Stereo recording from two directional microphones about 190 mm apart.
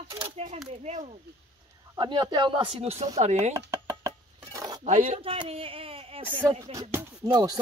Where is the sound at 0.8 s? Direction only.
35° right (ahead or behind).